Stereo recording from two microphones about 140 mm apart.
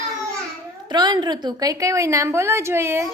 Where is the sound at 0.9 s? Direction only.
30° right (ahead or behind).